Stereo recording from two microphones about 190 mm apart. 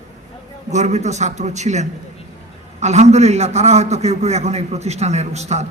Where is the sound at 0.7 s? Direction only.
40° right (ahead or behind).